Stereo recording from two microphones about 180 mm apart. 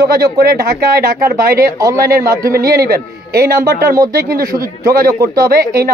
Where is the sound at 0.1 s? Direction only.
55° right (ahead or behind).